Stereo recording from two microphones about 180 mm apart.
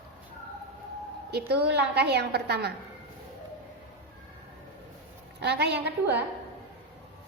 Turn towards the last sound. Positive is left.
turn(degrees=-70)  # may be behind; listen again after turning